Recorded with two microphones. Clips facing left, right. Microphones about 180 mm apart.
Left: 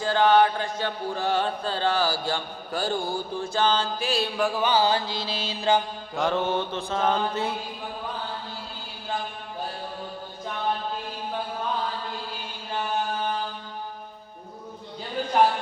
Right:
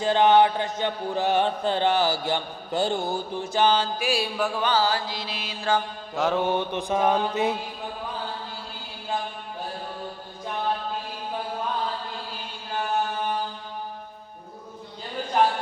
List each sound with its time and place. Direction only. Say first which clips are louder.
0.0 s chant: right 1 dB; 20° right (ahead or behind)
4.6 s mantra: left 1 dB; 15° left (ahead or behind)
6.1 s mantra: right 1 dB; 5° right (ahead or behind)